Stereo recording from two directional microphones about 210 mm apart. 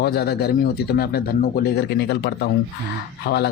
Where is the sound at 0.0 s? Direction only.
50° left (ahead or behind).